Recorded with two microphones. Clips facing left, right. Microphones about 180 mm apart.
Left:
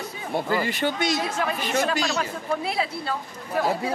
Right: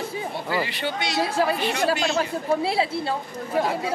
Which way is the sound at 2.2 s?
30° right (ahead or behind).